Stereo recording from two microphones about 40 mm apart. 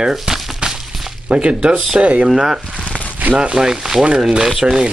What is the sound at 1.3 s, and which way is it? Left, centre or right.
Speech, right.